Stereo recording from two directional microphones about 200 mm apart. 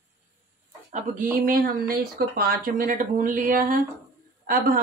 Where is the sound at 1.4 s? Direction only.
50° right (ahead or behind).